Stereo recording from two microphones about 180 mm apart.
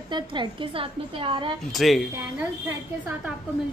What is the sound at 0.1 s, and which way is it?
A woman's voice, 25° right (ahead or behind).